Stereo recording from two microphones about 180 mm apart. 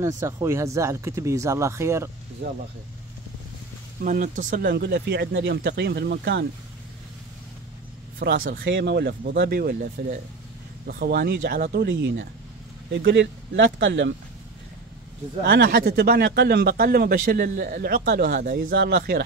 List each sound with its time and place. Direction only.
0.0 s speech: 15° right (ahead or behind)
4.0 s speech: 45° right (ahead or behind); by 6.4 s 70° right (ahead or behind)
8.2 s speech: 55° right (ahead or behind)
8.6 s speech: 85° right
15.4 s speech: 55° right (ahead or behind)